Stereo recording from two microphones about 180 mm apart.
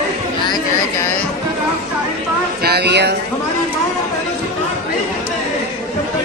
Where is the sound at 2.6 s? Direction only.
65° right (ahead or behind).